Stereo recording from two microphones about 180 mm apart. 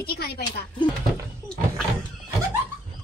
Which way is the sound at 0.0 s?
60° left (ahead or behind).